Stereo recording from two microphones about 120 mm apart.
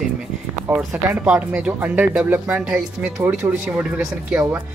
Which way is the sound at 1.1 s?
10° right (ahead or behind).